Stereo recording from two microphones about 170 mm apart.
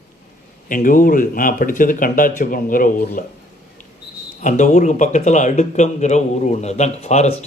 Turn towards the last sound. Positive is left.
turn(degrees=40)  # may be behind; listen again after turning